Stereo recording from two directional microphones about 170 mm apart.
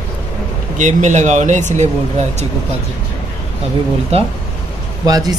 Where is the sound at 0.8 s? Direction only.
45° right (ahead or behind).